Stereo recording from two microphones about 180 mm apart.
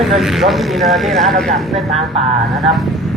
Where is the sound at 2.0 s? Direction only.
35° right (ahead or behind).